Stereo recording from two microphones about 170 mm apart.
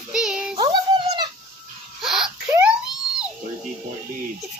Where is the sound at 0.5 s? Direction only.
25° right (ahead or behind).